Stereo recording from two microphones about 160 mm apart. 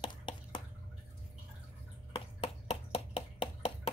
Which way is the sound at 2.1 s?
35° left (ahead or behind).